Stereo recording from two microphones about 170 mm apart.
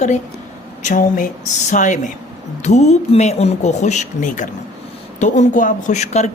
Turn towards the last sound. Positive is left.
turn(degrees=40)  # may be behind; listen again after turning